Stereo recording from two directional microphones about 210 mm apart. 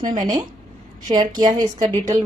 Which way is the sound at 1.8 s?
35° right (ahead or behind).